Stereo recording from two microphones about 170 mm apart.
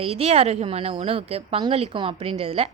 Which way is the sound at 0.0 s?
35° right (ahead or behind).